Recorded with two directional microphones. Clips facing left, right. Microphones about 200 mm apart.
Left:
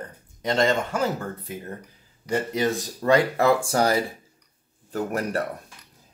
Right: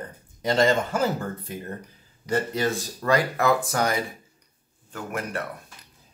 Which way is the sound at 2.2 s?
15° left (ahead or behind).